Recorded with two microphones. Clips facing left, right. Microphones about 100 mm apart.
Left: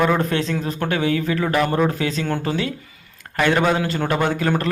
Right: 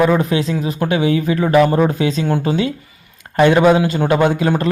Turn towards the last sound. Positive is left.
turn(degrees=-15)  # may be behind; listen again after turning